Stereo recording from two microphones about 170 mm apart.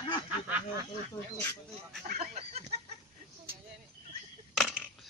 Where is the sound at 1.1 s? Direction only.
15° left (ahead or behind).